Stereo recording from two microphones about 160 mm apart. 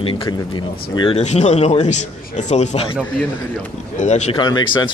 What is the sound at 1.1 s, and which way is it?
A man's voice, 45° left (ahead or behind).